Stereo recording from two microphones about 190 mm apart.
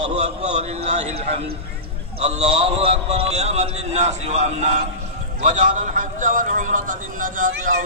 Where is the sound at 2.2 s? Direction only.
35° right (ahead or behind).